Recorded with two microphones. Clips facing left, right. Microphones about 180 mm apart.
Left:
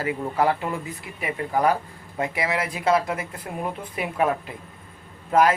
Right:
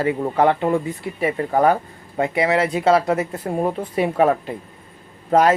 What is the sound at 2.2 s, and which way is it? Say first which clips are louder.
Speech: right 7 dB; 30° right (ahead or behind).